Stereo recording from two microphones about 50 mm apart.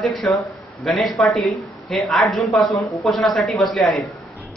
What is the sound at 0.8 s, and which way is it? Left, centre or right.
Speech, centre.